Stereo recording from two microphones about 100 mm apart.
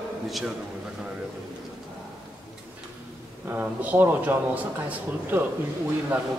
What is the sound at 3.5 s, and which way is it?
A man's voice, 20° right (ahead or behind).